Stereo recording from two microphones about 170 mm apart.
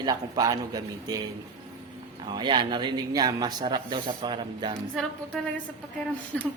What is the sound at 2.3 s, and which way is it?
A woman's voice, 25° right (ahead or behind).